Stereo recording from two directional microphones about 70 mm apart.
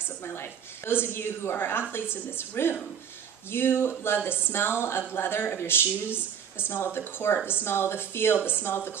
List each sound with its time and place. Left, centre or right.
1.1 s speech: left